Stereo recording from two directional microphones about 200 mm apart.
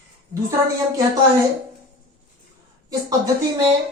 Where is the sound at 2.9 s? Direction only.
15° right (ahead or behind).